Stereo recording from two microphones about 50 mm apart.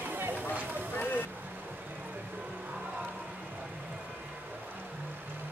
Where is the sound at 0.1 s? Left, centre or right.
Right.